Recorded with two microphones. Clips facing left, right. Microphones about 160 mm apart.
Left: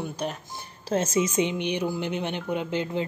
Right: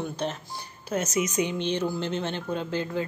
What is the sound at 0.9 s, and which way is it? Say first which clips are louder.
Speech: left 3 dB; 30° left (ahead or behind).